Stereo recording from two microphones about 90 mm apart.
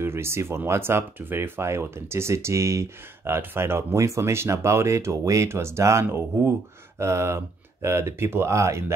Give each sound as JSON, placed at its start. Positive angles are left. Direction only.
{"t": 0.0, "sound": "speech", "side_deg": -30}